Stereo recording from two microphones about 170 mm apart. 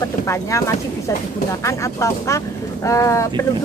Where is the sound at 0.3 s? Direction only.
20° left (ahead or behind).